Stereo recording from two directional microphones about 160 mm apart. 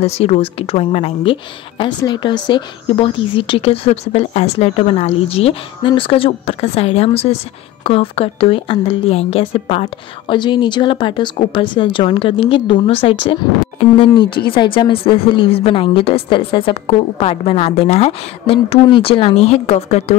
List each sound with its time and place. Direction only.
0.0 s a woman's voice: 40° left (ahead or behind)